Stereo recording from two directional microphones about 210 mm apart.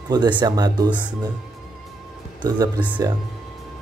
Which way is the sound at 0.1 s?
20° right (ahead or behind).